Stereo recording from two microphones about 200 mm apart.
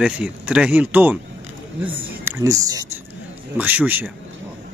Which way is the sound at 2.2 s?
15° right (ahead or behind).